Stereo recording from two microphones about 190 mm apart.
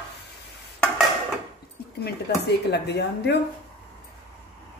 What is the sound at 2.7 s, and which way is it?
Speech, 60° left (ahead or behind).